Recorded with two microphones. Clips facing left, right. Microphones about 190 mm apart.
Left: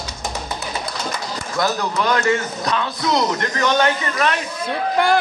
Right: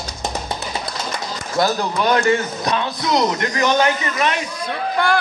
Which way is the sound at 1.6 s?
30° right (ahead or behind).